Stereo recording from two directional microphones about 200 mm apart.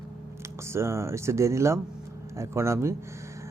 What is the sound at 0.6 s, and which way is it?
A man's voice, 15° right (ahead or behind).